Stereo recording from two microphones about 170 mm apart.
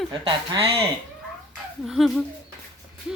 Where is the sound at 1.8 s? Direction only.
Centre (ahead or behind).